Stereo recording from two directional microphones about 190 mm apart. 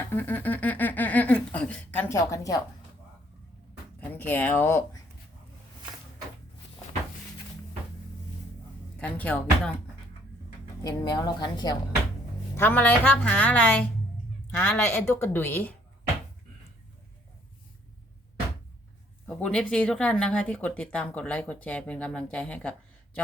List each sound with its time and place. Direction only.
0.1 s a sound: 10° left (ahead or behind)
4.0 s a woman's voice: 10° left (ahead or behind)
9.0 s a woman's voice: 5° left (ahead or behind)
10.8 s a woman's voice: 20° left (ahead or behind)
12.5 s a woman's voice: 10° left (ahead or behind)
19.3 s speech: 5° left (ahead or behind)